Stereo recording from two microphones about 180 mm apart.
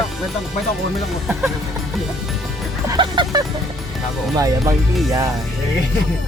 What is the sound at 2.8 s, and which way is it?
Music, 25° right (ahead or behind).